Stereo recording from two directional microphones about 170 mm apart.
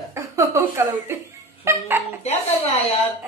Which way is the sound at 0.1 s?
15° right (ahead or behind).